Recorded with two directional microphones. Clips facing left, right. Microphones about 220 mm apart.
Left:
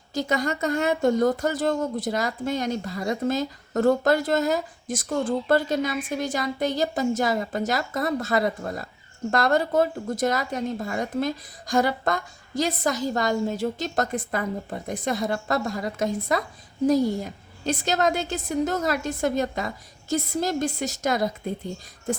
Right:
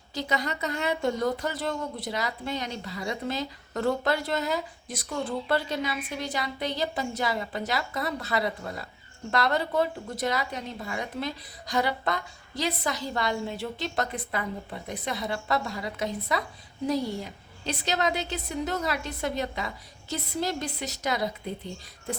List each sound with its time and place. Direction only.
0.1 s speech: 45° left (ahead or behind)